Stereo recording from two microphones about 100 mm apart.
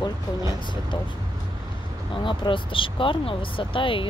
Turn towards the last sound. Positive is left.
turn(degrees=60)  # may be behind; listen again after turning